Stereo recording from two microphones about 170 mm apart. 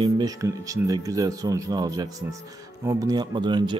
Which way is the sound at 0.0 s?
20° right (ahead or behind).